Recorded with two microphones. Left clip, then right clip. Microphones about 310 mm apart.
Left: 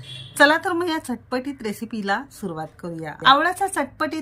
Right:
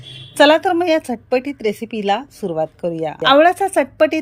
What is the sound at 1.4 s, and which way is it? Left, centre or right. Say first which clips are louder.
Speech: right 8 dB; left.